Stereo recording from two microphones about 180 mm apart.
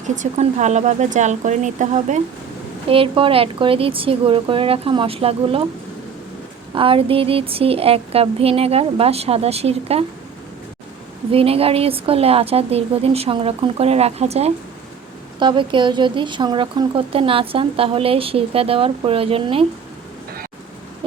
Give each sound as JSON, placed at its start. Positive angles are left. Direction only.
{"t": 0.1, "sound": "speech", "side_deg": -40}
{"t": 2.9, "sound": "speech", "side_deg": -30}
{"t": 6.7, "sound": "speech", "side_deg": -30}
{"t": 11.3, "sound": "speech", "side_deg": -30}